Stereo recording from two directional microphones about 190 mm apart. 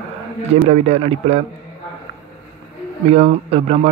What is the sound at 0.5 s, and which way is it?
Speech, 35° right (ahead or behind).